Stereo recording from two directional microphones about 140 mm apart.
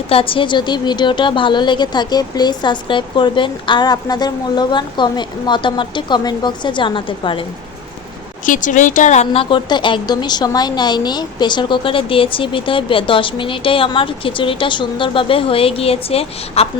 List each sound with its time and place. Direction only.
0.1 s speech: 40° left (ahead or behind)
8.4 s speech: 70° left (ahead or behind); by 16.6 s 45° left (ahead or behind)